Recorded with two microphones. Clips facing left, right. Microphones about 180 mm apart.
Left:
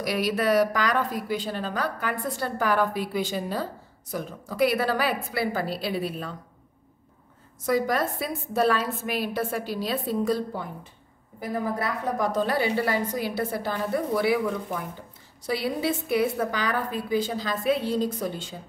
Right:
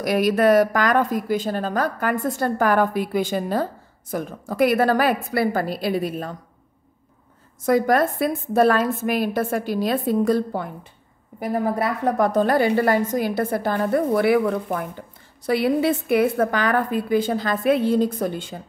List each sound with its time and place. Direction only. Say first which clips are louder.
0.0 s a woman's voice: right 7 dB; 50° right (ahead or behind)
7.6 s a woman's voice: right 6 dB; 55° right (ahead or behind)